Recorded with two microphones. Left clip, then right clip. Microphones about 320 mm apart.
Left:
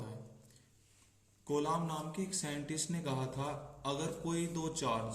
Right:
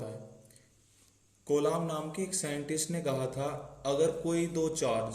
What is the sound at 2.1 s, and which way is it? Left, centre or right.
Speech, centre.